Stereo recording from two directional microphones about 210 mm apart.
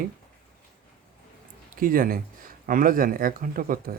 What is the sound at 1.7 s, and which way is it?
Speech, 40° right (ahead or behind).